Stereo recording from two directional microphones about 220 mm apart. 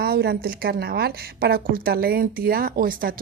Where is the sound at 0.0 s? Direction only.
45° right (ahead or behind).